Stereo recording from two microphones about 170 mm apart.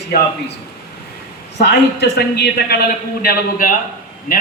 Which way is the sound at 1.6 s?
70° left (ahead or behind).